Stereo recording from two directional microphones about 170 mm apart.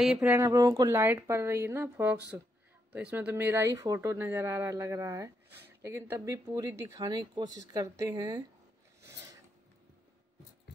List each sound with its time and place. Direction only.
0.0 s speech: 5° right (ahead or behind)